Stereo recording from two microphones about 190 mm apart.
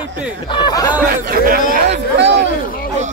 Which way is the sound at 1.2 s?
50° right (ahead or behind).